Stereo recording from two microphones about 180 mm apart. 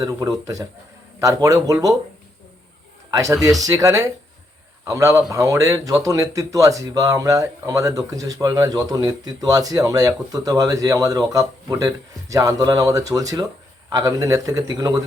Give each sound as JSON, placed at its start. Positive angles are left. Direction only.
{"t": 0.0, "sound": "speech", "side_deg": -20}
{"t": 3.1, "sound": "speech", "side_deg": -20}